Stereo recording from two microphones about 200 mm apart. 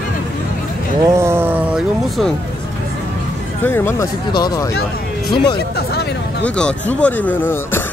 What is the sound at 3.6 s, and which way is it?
Speech, 10° left (ahead or behind).